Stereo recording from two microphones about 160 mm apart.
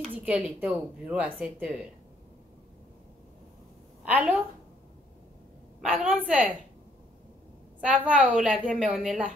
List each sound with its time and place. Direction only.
0.2 s a woman's voice: 10° right (ahead or behind)
4.0 s a woman's voice: 10° right (ahead or behind)
5.8 s a woman's voice: 10° right (ahead or behind)
7.8 s a woman's voice: 10° right (ahead or behind)